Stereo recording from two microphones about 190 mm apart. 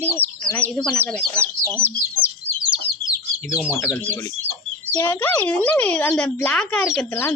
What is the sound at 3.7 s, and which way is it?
Speech, 10° left (ahead or behind).